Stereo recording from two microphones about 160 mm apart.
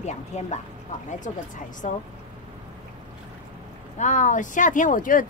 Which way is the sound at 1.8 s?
45° left (ahead or behind).